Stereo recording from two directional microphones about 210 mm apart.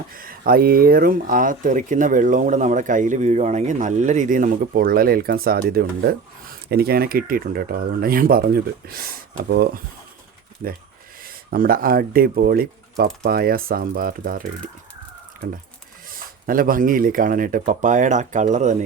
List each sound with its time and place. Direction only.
0.1 s speech: 45° right (ahead or behind)
16.0 s speech: 40° right (ahead or behind)